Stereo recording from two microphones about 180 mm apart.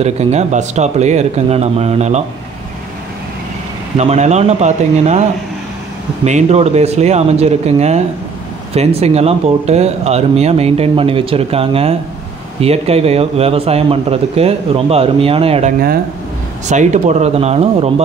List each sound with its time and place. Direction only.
0.0 s speech: 35° right (ahead or behind)
3.9 s speech: 40° right (ahead or behind)
6.2 s speech: 40° right (ahead or behind)